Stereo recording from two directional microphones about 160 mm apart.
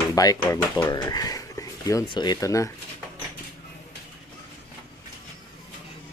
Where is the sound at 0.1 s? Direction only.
25° left (ahead or behind).